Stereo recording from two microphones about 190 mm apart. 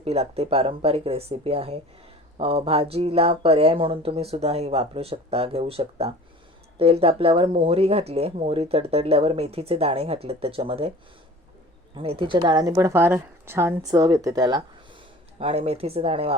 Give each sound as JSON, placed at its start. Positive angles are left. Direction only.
{"t": 0.0, "sound": "speech", "side_deg": -30}
{"t": 11.9, "sound": "a woman's voice", "side_deg": -25}
{"t": 15.4, "sound": "speech", "side_deg": -30}